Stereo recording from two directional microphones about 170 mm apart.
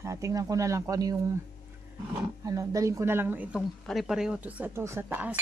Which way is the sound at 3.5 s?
Centre (ahead or behind).